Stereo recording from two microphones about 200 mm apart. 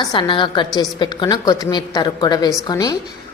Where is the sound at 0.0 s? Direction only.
25° left (ahead or behind).